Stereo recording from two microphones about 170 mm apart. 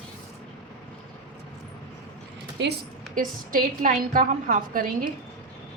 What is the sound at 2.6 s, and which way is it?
Speech, 90° right.